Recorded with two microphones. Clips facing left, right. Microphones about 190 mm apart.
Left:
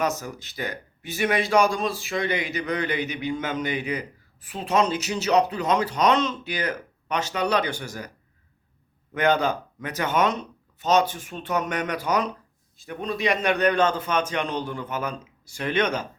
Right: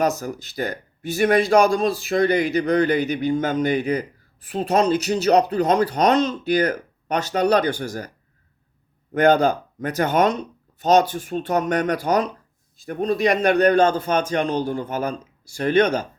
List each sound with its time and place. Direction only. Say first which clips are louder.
0.0 s speech: right 5 dB; 40° right (ahead or behind)
4.5 s speech: right 4 dB; 40° right (ahead or behind)
9.1 s speech: right 6 dB; 40° right (ahead or behind)